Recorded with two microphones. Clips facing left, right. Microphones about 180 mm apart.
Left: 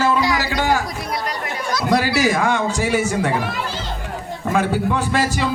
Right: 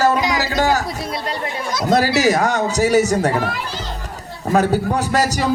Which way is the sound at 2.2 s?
40° right (ahead or behind).